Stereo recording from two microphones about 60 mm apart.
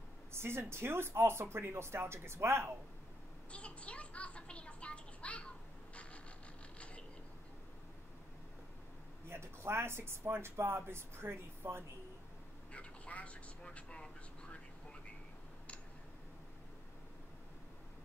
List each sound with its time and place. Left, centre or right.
0.3 s speech: right
3.5 s a sound: centre
6.8 s mechanisms: centre
9.3 s speech: right
12.7 s vehicle: left